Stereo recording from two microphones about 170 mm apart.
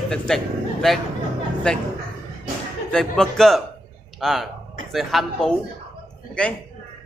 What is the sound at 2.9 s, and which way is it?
A man's voice, 5° left (ahead or behind).